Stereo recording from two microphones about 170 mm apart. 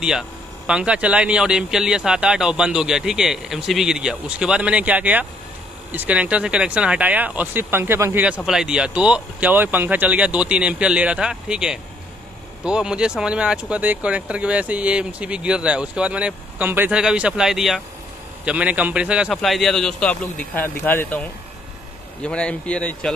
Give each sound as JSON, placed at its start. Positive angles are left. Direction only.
{"t": 0.7, "sound": "speech", "side_deg": -5}